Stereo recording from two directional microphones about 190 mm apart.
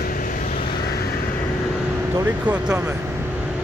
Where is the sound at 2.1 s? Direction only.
10° right (ahead or behind).